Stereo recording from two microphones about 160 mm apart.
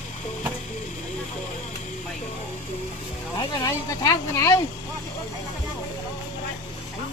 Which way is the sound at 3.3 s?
20° left (ahead or behind).